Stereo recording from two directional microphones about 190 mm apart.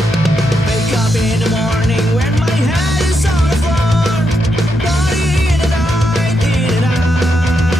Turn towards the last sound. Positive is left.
turn(degrees=0)  # may be behind; listen again after turning